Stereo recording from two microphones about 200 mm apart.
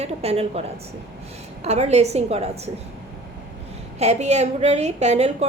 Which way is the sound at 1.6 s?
35° right (ahead or behind).